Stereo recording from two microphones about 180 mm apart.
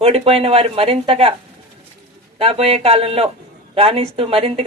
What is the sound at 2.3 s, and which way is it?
Speech, 35° right (ahead or behind).